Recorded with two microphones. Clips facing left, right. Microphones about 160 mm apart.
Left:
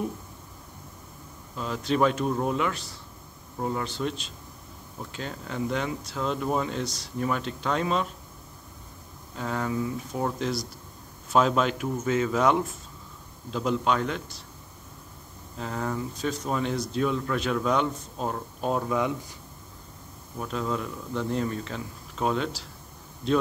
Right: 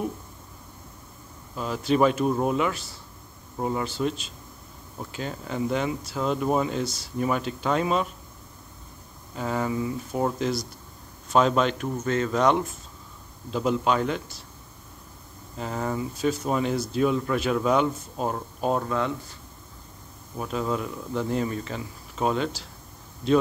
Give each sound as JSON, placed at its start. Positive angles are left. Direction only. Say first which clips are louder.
{"t": 1.5, "sound": "speech", "louder": "right 3 dB", "side_deg": -5}
{"t": 9.3, "sound": "speech", "louder": "right 2 dB", "side_deg": -5}
{"t": 15.5, "sound": "speech", "louder": "right 2 dB", "side_deg": -5}
{"t": 18.9, "sound": "speech", "louder": "even", "side_deg": 10}
{"t": 20.3, "sound": "speech", "louder": "right 2 dB", "side_deg": -5}